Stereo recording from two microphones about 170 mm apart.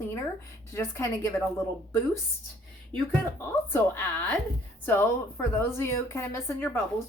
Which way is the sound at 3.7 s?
10° left (ahead or behind).